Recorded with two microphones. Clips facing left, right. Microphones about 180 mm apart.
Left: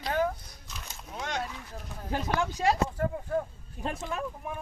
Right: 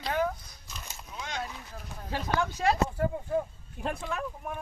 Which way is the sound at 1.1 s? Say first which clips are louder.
Left 4 dB; 65° left (ahead or behind).